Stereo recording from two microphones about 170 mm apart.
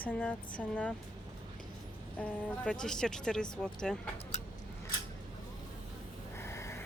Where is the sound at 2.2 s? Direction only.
5° left (ahead or behind).